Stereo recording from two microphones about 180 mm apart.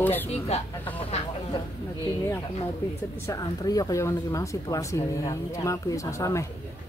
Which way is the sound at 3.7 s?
20° left (ahead or behind).